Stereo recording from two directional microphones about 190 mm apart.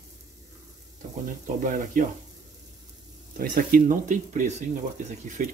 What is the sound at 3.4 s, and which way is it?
Speech, 45° right (ahead or behind).